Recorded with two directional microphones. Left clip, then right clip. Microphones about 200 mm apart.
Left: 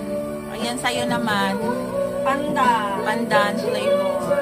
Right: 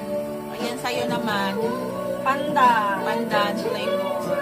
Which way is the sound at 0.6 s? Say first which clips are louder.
Left 3 dB; 30° left (ahead or behind).